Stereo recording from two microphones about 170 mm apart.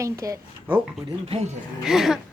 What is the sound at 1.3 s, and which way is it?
Speech, 40° right (ahead or behind).